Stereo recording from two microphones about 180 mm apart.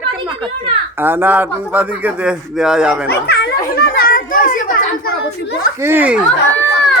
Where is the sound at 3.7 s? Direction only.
55° left (ahead or behind).